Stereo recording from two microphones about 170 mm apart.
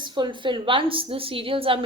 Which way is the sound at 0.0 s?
30° right (ahead or behind).